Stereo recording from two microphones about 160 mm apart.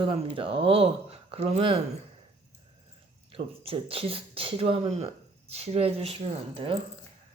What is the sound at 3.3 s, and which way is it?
Speech, 35° right (ahead or behind).